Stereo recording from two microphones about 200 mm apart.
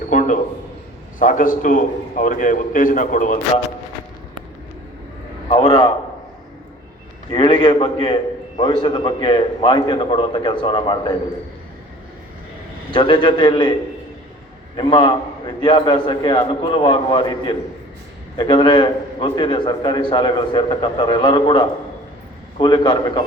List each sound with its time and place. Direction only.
0.1 s a sound: 40° left (ahead or behind)
1.2 s a man's voice: 40° left (ahead or behind)
5.5 s a man's voice: 25° left (ahead or behind)
7.3 s a man's voice: 25° left (ahead or behind)
12.9 s a man's voice: 25° left (ahead or behind)
14.8 s a man's voice: 25° left (ahead or behind)